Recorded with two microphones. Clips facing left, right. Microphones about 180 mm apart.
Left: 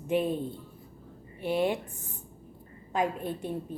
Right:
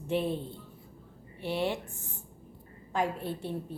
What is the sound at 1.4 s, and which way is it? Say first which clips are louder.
Speech: left 4 dB; 15° left (ahead or behind).